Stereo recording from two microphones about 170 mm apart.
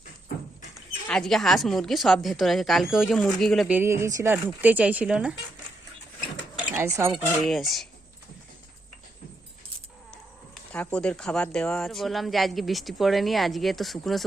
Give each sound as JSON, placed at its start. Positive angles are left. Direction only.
{"t": 1.0, "sound": "speech", "side_deg": 5}
{"t": 3.7, "sound": "speech", "side_deg": -15}
{"t": 6.7, "sound": "speech", "side_deg": -15}
{"t": 7.4, "sound": "speech", "side_deg": 0}
{"t": 10.1, "sound": "speech", "side_deg": 5}